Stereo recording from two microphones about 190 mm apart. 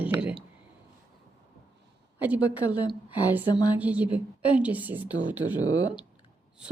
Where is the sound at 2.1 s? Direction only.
10° right (ahead or behind).